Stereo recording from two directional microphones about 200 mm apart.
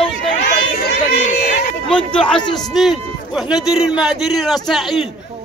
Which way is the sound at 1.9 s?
5° left (ahead or behind).